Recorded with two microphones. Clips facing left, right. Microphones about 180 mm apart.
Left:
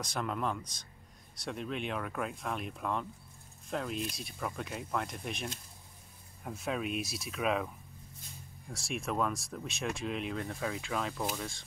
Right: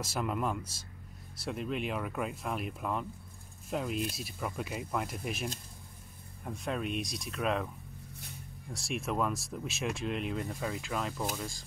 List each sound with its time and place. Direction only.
0.0 s speech: 5° right (ahead or behind)
8.7 s speech: centre (ahead or behind)